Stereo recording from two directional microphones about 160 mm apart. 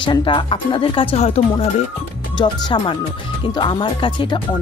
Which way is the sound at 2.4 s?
30° left (ahead or behind).